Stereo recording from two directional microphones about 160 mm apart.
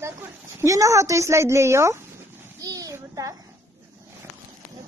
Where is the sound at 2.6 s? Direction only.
20° right (ahead or behind).